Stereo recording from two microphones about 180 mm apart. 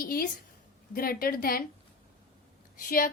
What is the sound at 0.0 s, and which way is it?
A woman's voice, 55° left (ahead or behind).